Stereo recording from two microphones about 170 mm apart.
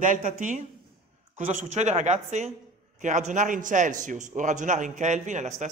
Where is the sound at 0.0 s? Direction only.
50° right (ahead or behind).